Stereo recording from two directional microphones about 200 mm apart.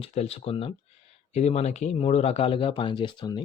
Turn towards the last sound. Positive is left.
turn(degrees=25)  # may be behind; listen again after turning